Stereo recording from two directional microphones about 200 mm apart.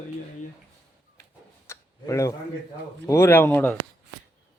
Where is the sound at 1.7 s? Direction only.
15° left (ahead or behind).